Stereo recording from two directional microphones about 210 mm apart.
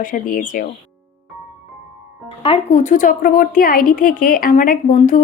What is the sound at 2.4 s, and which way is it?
Speech, 30° left (ahead or behind).